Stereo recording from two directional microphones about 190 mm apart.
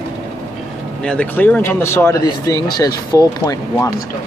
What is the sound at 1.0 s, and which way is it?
Speech, 5° left (ahead or behind).